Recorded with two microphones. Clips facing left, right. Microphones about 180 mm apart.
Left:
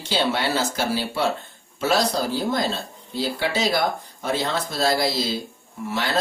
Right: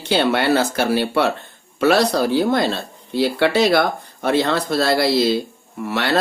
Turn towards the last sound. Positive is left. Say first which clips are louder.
# right 5 dB
turn(degrees=-65)  # may be behind; listen again after turning